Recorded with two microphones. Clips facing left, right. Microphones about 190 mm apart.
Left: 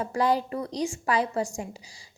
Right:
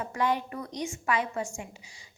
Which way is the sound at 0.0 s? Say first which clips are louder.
Left 4 dB; 35° left (ahead or behind).